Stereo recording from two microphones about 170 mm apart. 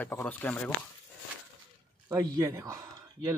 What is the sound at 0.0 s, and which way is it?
Speech, 15° left (ahead or behind).